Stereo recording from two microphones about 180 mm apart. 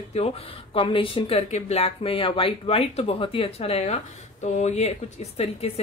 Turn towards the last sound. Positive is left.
turn(degrees=35)  # may be behind; listen again after turning